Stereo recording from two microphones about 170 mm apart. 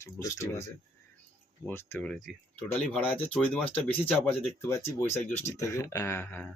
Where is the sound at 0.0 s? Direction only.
15° left (ahead or behind).